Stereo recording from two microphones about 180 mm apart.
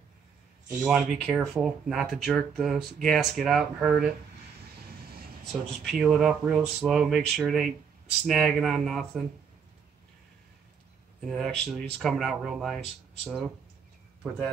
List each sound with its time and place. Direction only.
0.8 s speech: centre (ahead or behind)
5.9 s speech: 5° right (ahead or behind)
11.1 s speech: centre (ahead or behind)